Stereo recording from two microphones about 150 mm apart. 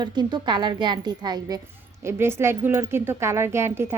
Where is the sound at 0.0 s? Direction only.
30° right (ahead or behind).